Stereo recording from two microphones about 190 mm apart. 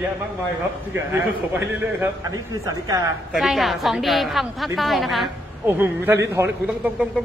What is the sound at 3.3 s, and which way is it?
A man's voice, centre (ahead or behind).